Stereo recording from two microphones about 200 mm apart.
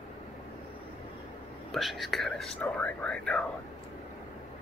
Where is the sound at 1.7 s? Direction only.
Centre (ahead or behind).